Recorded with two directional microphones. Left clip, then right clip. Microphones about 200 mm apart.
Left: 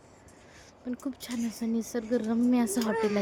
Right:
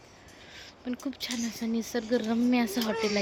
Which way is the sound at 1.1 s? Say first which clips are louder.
Right 2 dB; 15° left (ahead or behind).